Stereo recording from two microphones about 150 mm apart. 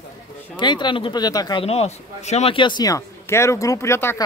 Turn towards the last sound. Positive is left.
turn(degrees=15)  # may be behind; listen again after turning